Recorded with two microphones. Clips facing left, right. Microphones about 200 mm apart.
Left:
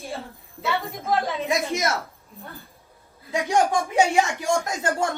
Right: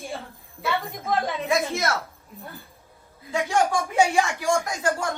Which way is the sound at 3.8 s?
15° left (ahead or behind).